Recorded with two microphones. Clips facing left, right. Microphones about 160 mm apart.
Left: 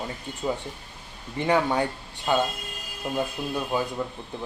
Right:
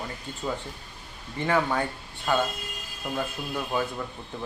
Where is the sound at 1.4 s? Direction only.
20° left (ahead or behind).